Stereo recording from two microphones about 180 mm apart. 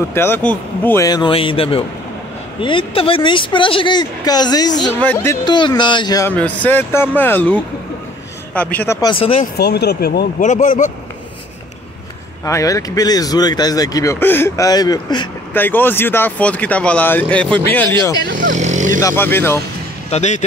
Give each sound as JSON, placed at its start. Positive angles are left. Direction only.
{"t": 0.1, "sound": "speech", "side_deg": 15}
{"t": 5.0, "sound": "speech", "side_deg": 10}
{"t": 6.3, "sound": "speech", "side_deg": 10}
{"t": 9.1, "sound": "speech", "side_deg": 30}
{"t": 9.6, "sound": "speech", "side_deg": 65}
{"t": 10.4, "sound": "speech", "side_deg": 45}
{"t": 12.4, "sound": "speech", "side_deg": 15}
{"t": 15.5, "sound": "speech", "side_deg": 10}
{"t": 18.4, "sound": "speech", "side_deg": -45}
{"t": 18.9, "sound": "speech", "side_deg": 15}
{"t": 20.1, "sound": "speech", "side_deg": 40}